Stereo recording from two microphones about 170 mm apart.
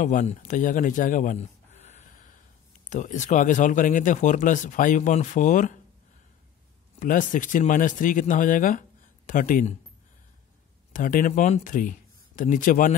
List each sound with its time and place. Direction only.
0.0 s a man's voice: 50° left (ahead or behind)
7.0 s speech: 50° left (ahead or behind)
10.9 s speech: 55° left (ahead or behind)